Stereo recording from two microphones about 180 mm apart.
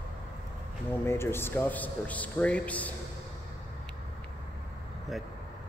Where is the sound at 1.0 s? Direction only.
15° left (ahead or behind).